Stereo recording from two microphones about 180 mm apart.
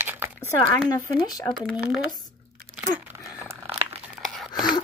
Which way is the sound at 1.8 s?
5° right (ahead or behind).